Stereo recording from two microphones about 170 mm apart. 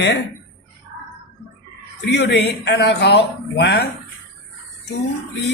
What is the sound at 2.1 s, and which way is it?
Speech, 90° left.